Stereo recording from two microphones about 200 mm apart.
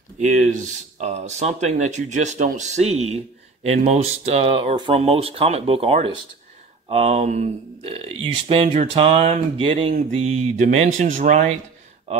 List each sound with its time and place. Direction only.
0.3 s speech: 40° right (ahead or behind)